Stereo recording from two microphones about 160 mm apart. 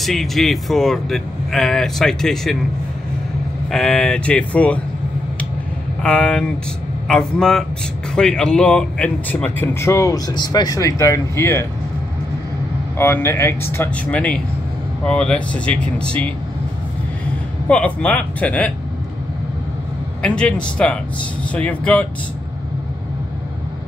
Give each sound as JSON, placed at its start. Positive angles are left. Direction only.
{"t": 0.0, "sound": "speech", "side_deg": 0}
{"t": 3.7, "sound": "speech", "side_deg": 5}
{"t": 6.0, "sound": "speech", "side_deg": 5}
{"t": 12.9, "sound": "speech", "side_deg": 15}
{"t": 17.6, "sound": "speech", "side_deg": 5}
{"t": 20.2, "sound": "a man's voice", "side_deg": 5}